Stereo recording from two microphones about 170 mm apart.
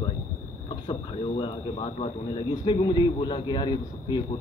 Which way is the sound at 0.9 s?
30° left (ahead or behind).